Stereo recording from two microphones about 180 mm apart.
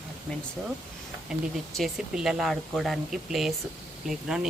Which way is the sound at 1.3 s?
Centre (ahead or behind).